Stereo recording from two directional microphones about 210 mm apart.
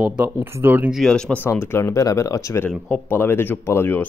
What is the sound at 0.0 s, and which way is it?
Speech, 10° right (ahead or behind).